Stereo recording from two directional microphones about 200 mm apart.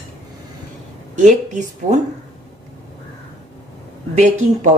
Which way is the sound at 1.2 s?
40° right (ahead or behind).